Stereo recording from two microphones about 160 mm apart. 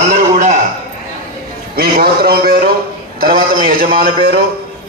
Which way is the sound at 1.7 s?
70° right (ahead or behind).